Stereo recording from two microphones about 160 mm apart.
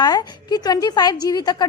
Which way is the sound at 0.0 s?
25° left (ahead or behind).